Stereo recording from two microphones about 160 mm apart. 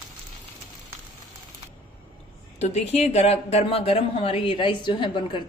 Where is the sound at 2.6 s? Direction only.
45° left (ahead or behind).